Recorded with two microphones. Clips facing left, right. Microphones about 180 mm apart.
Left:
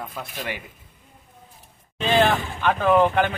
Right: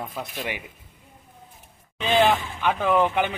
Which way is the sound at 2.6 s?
15° right (ahead or behind).